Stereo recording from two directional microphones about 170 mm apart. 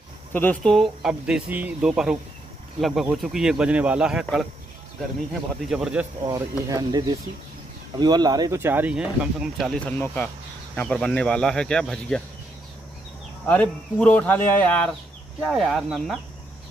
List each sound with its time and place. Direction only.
0.3 s speech: 10° left (ahead or behind)
1.0 s speech: 5° right (ahead or behind)
5.7 s speech: 5° right (ahead or behind)
6.2 s speech: 20° right (ahead or behind); by 12.2 s 5° left (ahead or behind)
13.5 s speech: 10° left (ahead or behind)